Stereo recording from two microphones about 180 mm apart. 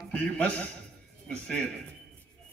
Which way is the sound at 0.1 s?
10° left (ahead or behind).